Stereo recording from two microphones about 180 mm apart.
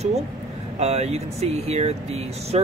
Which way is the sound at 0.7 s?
35° right (ahead or behind).